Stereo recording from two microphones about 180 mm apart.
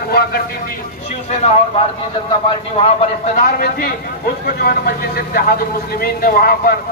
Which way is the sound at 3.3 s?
50° left (ahead or behind).